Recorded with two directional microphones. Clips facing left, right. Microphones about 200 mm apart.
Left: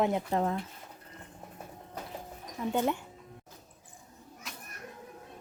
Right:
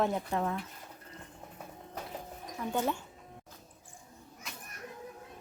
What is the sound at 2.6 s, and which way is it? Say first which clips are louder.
Speech: left 3 dB; 20° left (ahead or behind).